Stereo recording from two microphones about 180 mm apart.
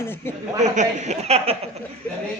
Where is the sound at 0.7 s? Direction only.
35° right (ahead or behind).